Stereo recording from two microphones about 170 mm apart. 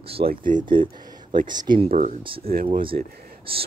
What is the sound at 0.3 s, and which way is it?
Speech, 50° right (ahead or behind).